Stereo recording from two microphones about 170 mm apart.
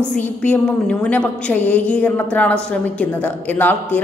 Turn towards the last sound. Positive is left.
turn(degrees=10)  # may be behind; listen again after turning